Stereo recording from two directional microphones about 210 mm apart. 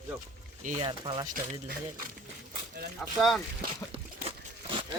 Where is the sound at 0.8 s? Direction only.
20° right (ahead or behind).